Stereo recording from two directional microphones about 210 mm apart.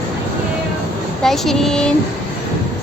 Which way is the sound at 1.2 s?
Centre (ahead or behind).